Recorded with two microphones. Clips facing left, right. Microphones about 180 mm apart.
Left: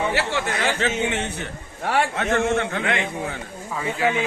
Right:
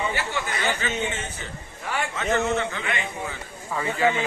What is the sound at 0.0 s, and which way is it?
A man's voice, 80° left.